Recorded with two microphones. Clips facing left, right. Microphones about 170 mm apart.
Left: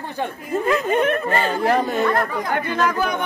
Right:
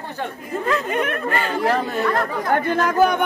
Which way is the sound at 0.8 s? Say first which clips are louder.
Left 4 dB; 30° left (ahead or behind).